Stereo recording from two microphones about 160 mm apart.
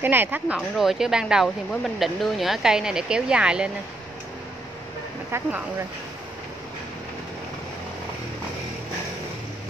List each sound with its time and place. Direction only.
0.0 s speech: 10° right (ahead or behind)
0.6 s speech: centre (ahead or behind)
5.3 s speech: 15° right (ahead or behind)